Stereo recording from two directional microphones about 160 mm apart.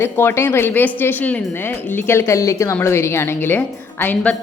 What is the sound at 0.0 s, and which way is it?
A woman's voice, 15° left (ahead or behind).